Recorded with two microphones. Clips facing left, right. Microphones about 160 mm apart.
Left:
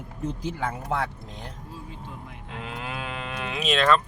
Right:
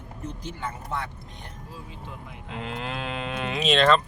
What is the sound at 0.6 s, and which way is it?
Speech, 90° left.